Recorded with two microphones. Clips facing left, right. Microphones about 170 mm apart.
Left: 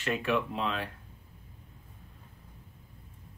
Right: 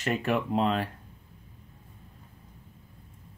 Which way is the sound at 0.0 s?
40° right (ahead or behind).